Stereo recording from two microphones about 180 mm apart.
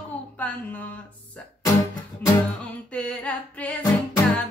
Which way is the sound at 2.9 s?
5° left (ahead or behind).